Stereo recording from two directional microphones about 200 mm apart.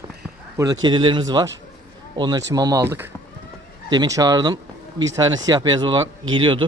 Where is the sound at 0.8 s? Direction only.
25° right (ahead or behind).